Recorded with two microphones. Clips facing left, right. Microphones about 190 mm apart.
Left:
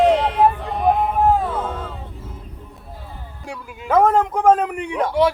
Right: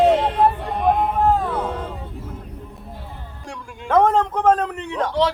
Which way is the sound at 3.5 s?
5° left (ahead or behind).